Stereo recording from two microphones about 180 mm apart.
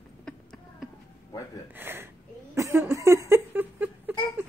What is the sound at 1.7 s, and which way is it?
Speech, 10° right (ahead or behind).